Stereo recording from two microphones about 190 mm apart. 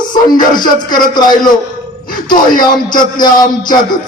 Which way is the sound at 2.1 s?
45° left (ahead or behind).